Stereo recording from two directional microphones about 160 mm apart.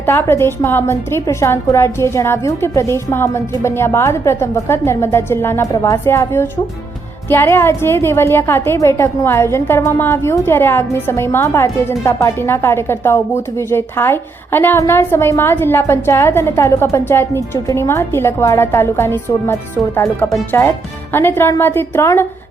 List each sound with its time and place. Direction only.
0.0 s a woman's voice: 15° left (ahead or behind)